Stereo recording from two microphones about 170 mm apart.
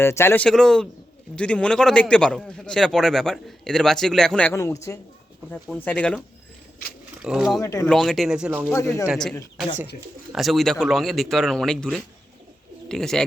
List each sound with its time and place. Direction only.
0.0 s a man's voice: 15° left (ahead or behind)
5.6 s speech: 5° left (ahead or behind)
7.2 s speech: 5° right (ahead or behind)
7.6 s speech: 20° left (ahead or behind)
7.9 s a man's voice: centre (ahead or behind)
8.7 s speech: 15° left (ahead or behind)
10.3 s a man's voice: centre (ahead or behind)